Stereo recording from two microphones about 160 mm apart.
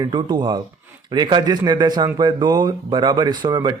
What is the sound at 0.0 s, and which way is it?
Speech, 30° right (ahead or behind).